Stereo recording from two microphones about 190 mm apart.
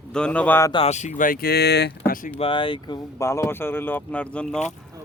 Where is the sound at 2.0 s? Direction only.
45° left (ahead or behind).